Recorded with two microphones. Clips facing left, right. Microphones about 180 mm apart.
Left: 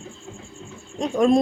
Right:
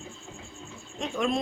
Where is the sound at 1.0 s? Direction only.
35° left (ahead or behind).